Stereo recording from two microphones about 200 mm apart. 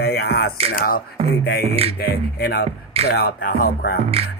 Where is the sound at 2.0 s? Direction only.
50° left (ahead or behind).